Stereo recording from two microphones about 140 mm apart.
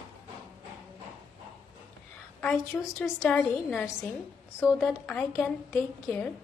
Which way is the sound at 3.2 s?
Centre (ahead or behind).